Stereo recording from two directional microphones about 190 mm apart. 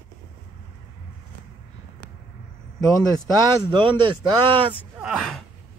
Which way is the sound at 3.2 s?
20° right (ahead or behind).